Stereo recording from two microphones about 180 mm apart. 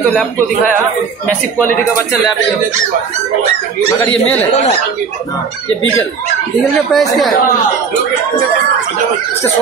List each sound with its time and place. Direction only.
6.9 s speech: centre (ahead or behind)